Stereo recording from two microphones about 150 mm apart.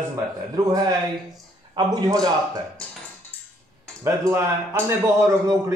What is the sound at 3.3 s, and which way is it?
Music, 15° left (ahead or behind).